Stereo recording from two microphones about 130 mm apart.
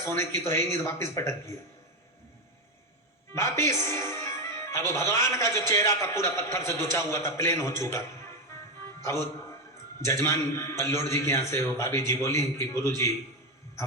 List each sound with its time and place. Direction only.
0.0 s a man's voice: 20° left (ahead or behind)
3.3 s music: 20° left (ahead or behind)
4.9 s a man's voice: 20° left (ahead or behind)
10.0 s a man's voice: 20° left (ahead or behind)